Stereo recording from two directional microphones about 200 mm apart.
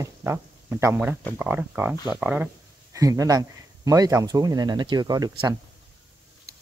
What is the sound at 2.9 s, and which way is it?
Speech, 15° right (ahead or behind).